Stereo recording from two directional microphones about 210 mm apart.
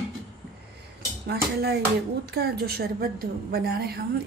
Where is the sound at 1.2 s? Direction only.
50° right (ahead or behind).